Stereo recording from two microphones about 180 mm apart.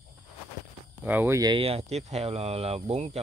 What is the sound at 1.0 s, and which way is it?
Speech, 10° right (ahead or behind).